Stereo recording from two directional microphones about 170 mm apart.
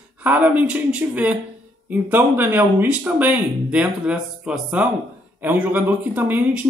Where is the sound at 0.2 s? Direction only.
10° right (ahead or behind).